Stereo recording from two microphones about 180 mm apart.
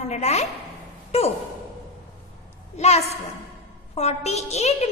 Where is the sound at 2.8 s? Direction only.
35° left (ahead or behind).